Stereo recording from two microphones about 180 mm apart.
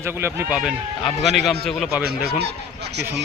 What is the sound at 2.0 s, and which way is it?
Speech, 60° right (ahead or behind).